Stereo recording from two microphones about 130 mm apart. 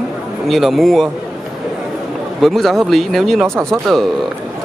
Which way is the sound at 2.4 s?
Centre (ahead or behind).